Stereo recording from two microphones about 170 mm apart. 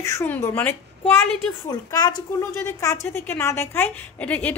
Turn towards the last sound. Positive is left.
turn(degrees=10)  # may be behind; listen again after turning